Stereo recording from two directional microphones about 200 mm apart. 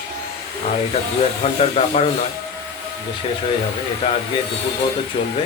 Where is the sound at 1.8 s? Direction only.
35° left (ahead or behind).